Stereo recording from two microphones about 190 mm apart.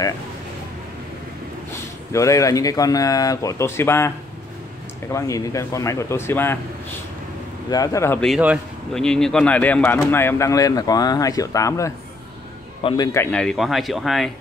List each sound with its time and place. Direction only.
2.1 s speech: 15° left (ahead or behind)
7.7 s speech: 20° left (ahead or behind)
8.3 s speech: 5° right (ahead or behind)